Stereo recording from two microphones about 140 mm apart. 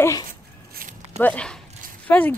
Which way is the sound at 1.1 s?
10° left (ahead or behind).